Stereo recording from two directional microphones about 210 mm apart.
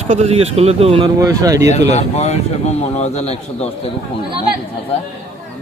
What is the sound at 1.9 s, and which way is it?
Speech, 30° left (ahead or behind).